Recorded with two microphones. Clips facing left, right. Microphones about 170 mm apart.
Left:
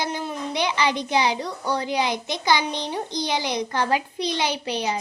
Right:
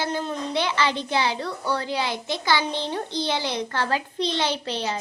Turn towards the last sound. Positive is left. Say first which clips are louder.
# left 1 dB
turn(degrees=15)  # may be behind; listen again after turning